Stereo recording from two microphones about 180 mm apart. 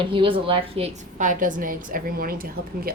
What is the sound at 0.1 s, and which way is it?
Speech, 30° right (ahead or behind).